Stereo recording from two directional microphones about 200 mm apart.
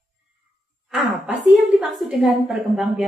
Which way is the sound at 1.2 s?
5° right (ahead or behind).